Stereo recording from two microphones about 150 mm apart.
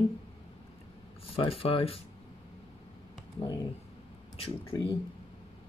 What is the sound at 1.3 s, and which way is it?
Speech, 40° left (ahead or behind).